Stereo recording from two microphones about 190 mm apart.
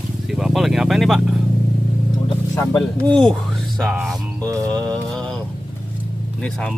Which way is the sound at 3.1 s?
5° left (ahead or behind).